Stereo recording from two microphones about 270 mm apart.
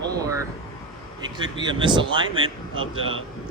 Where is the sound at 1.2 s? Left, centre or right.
Centre.